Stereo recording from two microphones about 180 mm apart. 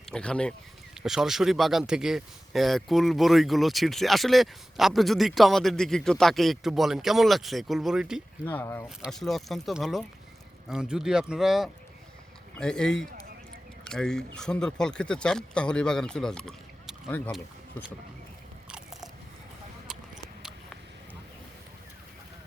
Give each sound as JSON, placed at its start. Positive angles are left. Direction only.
{"t": 0.1, "sound": "speech", "side_deg": 5}
{"t": 8.4, "sound": "speech", "side_deg": 10}
{"t": 9.0, "sound": "speech", "side_deg": 0}
{"t": 17.3, "sound": "speech", "side_deg": -5}